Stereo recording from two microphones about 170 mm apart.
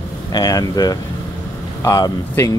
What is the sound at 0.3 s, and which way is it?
Speech, 20° left (ahead or behind).